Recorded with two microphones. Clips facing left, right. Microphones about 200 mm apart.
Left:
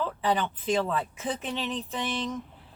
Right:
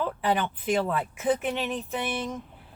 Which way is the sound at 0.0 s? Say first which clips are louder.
Right 1 dB; 15° right (ahead or behind).